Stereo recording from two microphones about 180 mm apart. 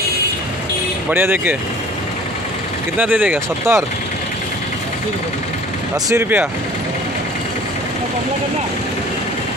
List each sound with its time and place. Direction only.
1.1 s speech: 10° right (ahead or behind)
3.0 s speech: 10° right (ahead or behind)
6.0 s speech: 15° right (ahead or behind)